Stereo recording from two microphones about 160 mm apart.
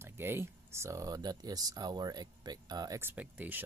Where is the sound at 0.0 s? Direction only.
15° right (ahead or behind).